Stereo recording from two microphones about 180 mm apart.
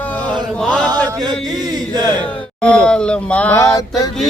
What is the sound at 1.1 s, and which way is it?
Chant, 25° right (ahead or behind).